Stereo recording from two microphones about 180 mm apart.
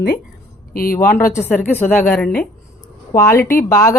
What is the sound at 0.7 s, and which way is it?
Speech, 55° left (ahead or behind).